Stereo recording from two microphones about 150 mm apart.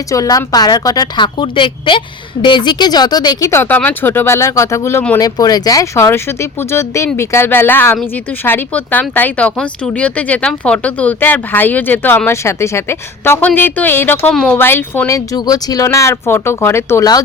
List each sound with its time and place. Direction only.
0.1 s a woman's voice: 20° left (ahead or behind)